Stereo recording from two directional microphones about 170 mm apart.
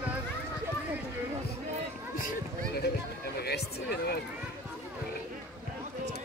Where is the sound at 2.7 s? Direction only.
70° left (ahead or behind).